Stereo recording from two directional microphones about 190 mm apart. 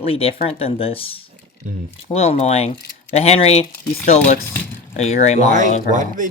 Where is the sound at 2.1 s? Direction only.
35° left (ahead or behind).